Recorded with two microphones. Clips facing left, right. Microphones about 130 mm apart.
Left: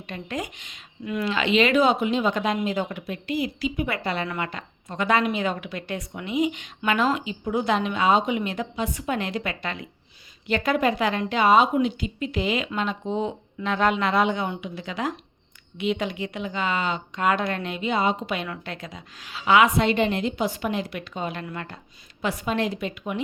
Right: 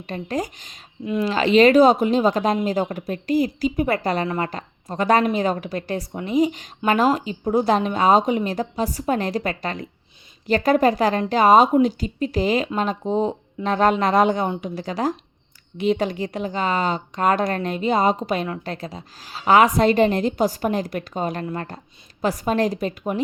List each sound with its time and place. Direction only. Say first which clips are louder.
0.1 s a woman's voice: right 6 dB; 35° right (ahead or behind)
1.0 s speech: right 5 dB; 25° right (ahead or behind)
1.3 s a woman's voice: right 7 dB; 40° right (ahead or behind)